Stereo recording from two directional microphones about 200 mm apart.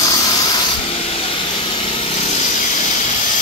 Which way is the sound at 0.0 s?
20° left (ahead or behind).